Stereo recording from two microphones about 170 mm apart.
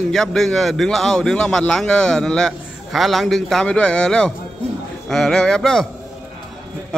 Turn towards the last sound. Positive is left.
turn(degrees=0)  # may be behind; listen again after turning